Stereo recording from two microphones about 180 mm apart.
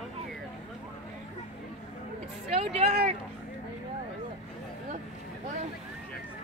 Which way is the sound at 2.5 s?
35° right (ahead or behind).